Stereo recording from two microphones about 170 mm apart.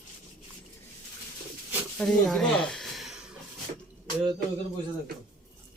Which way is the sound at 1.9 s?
5° left (ahead or behind).